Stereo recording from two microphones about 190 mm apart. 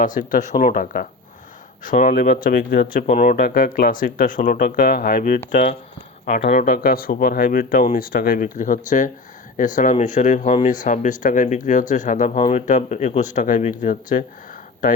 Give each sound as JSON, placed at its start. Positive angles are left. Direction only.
{"t": 0.0, "sound": "speech", "side_deg": 45}